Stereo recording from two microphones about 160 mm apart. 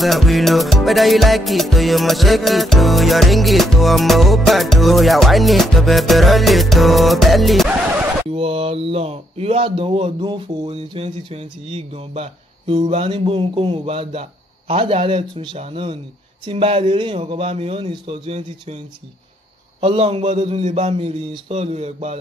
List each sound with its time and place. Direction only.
0.0 s music: centre (ahead or behind)
8.3 s speech: 35° right (ahead or behind)
19.8 s speech: 35° right (ahead or behind)